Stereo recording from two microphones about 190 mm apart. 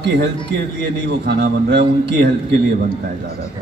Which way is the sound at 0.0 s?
65° right (ahead or behind).